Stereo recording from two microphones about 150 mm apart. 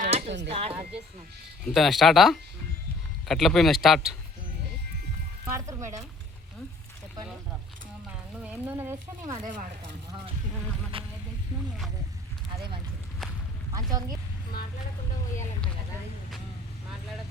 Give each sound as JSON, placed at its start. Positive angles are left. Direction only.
{"t": 0.1, "sound": "a sound", "side_deg": -45}
{"t": 0.7, "sound": "speech", "side_deg": -5}
{"t": 5.5, "sound": "speech", "side_deg": -20}
{"t": 8.4, "sound": "speech", "side_deg": -10}
{"t": 10.9, "sound": "vehicle", "side_deg": -35}